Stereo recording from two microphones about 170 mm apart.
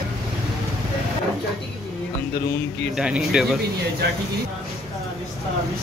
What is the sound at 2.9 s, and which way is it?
Speech, 5° right (ahead or behind).